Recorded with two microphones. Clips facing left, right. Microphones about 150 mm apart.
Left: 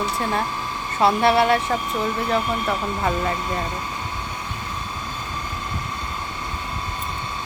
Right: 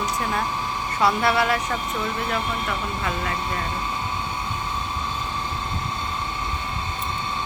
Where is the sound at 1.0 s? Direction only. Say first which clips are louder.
Left 4 dB; 25° left (ahead or behind).